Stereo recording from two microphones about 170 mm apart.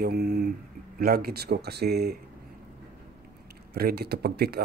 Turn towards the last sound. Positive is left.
turn(degrees=-70)  # may be behind; listen again after turning